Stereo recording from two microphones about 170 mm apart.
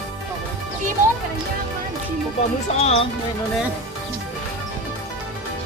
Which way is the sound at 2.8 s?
40° left (ahead or behind).